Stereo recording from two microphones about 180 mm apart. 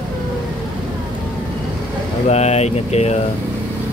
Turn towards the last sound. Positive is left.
turn(degrees=35)  # may be behind; listen again after turning